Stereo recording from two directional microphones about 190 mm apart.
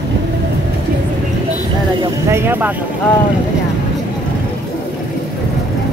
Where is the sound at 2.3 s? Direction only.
10° right (ahead or behind).